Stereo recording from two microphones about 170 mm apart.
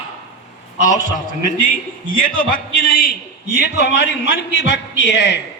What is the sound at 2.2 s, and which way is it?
Speech, 55° left (ahead or behind).